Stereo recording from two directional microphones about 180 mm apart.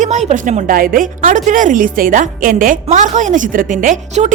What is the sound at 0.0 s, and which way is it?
A woman's voice, 40° right (ahead or behind).